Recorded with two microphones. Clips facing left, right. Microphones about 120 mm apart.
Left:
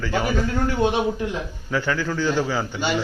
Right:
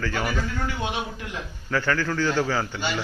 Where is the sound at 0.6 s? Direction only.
40° left (ahead or behind).